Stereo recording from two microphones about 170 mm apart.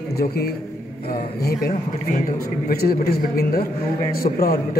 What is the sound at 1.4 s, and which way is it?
Speech, 60° left (ahead or behind).